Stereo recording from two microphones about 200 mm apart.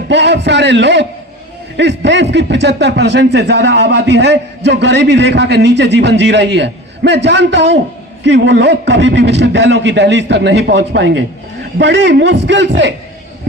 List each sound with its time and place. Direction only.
0.1 s speech: 60° right (ahead or behind)